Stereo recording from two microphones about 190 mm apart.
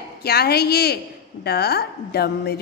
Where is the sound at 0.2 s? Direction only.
55° left (ahead or behind).